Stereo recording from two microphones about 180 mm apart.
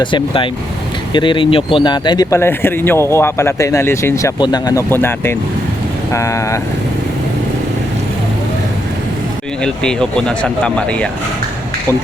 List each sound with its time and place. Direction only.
0.0 s speech: 25° left (ahead or behind)
9.6 s speech: 5° left (ahead or behind)